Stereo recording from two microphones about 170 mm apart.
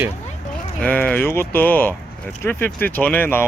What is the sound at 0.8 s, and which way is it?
Speech, 10° left (ahead or behind).